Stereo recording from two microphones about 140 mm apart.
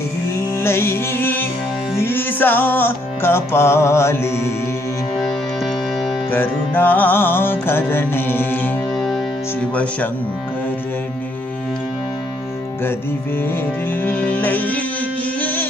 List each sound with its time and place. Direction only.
0.6 s music: 15° left (ahead or behind)
6.3 s music: 15° left (ahead or behind)
8.9 s music: centre (ahead or behind)
14.0 s music: 10° left (ahead or behind)